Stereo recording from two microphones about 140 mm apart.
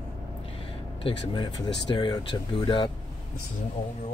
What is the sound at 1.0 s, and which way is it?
Speech, 35° left (ahead or behind).